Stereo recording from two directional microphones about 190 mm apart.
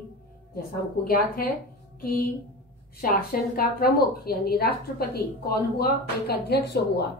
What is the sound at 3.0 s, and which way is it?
A woman's voice, 50° left (ahead or behind).